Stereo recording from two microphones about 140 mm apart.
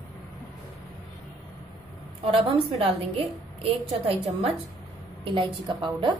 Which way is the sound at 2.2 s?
40° right (ahead or behind).